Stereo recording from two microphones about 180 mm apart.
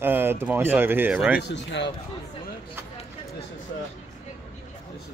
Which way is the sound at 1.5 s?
80° left.